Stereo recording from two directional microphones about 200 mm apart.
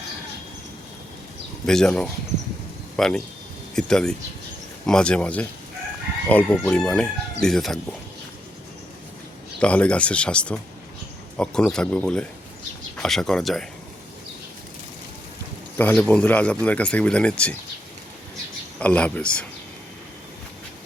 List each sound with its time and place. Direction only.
1.6 s speech: 5° left (ahead or behind)
9.6 s speech: 5° left (ahead or behind)
15.8 s speech: 10° left (ahead or behind)
18.8 s speech: 5° left (ahead or behind)